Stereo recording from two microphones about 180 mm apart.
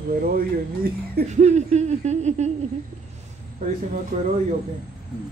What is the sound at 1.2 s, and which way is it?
A woman's voice, 40° right (ahead or behind).